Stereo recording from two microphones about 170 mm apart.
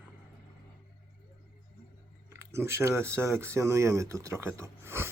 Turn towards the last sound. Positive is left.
turn(degrees=-15)  # may be behind; listen again after turning